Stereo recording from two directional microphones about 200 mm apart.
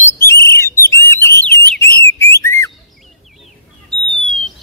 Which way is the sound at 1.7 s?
10° left (ahead or behind).